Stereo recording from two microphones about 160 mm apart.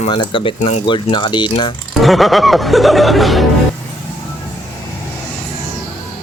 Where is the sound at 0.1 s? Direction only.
30° left (ahead or behind).